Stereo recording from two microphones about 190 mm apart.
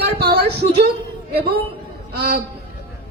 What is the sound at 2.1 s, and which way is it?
Speech, 55° right (ahead or behind).